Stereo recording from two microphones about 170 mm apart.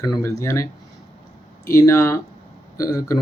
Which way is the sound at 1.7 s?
15° left (ahead or behind).